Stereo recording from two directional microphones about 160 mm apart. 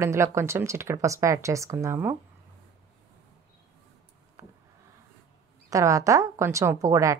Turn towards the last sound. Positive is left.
turn(degrees=-20)  # may be behind; listen again after turning